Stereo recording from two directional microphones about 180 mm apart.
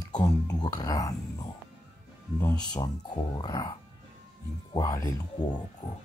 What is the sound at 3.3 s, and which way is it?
Speech, 20° left (ahead or behind).